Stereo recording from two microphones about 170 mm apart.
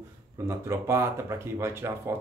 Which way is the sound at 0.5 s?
15° right (ahead or behind).